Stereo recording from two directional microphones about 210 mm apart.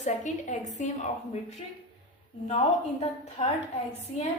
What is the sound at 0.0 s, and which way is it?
A woman's voice, 35° left (ahead or behind).